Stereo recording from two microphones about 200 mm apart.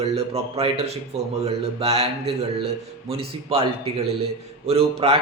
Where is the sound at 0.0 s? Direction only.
30° right (ahead or behind).